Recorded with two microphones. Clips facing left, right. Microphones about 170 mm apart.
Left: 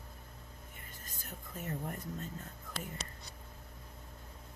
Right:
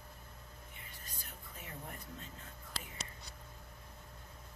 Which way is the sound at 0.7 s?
45° left (ahead or behind).